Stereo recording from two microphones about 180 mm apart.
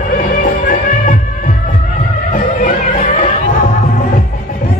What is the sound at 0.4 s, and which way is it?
Music, 45° left (ahead or behind).